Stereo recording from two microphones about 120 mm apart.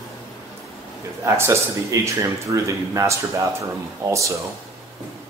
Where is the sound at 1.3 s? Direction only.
25° right (ahead or behind).